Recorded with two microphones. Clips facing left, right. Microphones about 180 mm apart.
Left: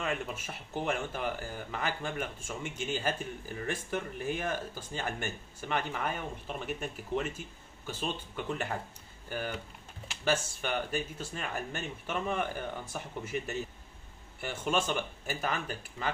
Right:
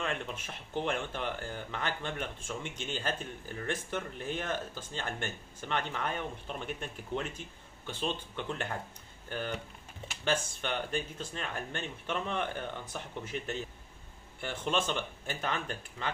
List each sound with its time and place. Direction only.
0.0 s speech: 5° left (ahead or behind)